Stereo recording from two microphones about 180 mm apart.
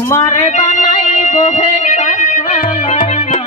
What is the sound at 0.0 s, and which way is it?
Music, 15° left (ahead or behind).